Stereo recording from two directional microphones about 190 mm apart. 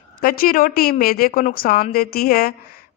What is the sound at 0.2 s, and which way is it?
A woman's voice, 50° left (ahead or behind).